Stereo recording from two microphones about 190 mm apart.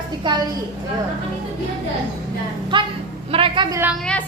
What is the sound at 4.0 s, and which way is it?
Speech, 5° left (ahead or behind).